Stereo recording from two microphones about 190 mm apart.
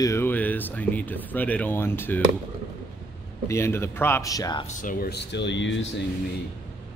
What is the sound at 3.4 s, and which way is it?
Speech, 15° left (ahead or behind).